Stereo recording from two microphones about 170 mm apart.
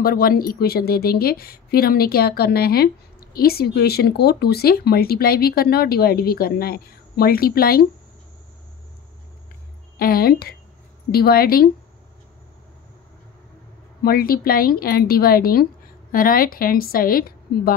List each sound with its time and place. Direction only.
0.0 s speech: 60° left (ahead or behind)
9.9 s speech: 60° left (ahead or behind)
14.0 s speech: 60° left (ahead or behind)